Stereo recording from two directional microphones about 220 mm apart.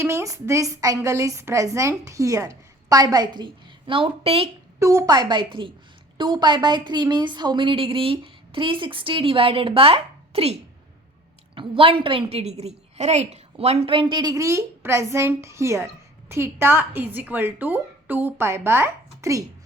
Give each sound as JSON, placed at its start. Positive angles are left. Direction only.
{"t": 0.0, "sound": "a woman's voice", "side_deg": -15}
{"t": 4.8, "sound": "a woman's voice", "side_deg": -15}
{"t": 11.5, "sound": "a woman's voice", "side_deg": -25}